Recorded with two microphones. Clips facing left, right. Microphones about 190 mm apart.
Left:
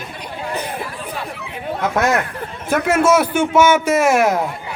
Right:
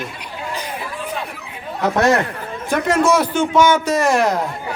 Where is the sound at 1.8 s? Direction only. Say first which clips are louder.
Right 2 dB; 40° right (ahead or behind).